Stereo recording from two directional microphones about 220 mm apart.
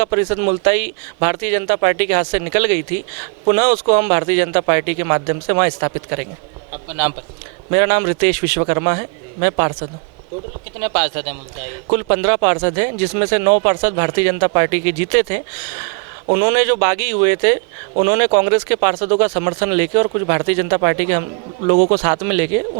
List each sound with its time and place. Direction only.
0.0 s speech: 15° right (ahead or behind)
7.7 s speech: 15° right (ahead or behind)
10.8 s speech: 15° right (ahead or behind)